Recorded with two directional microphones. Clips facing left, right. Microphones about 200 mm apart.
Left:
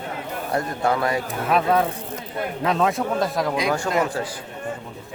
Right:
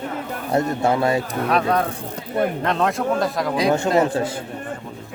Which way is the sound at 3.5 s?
30° right (ahead or behind).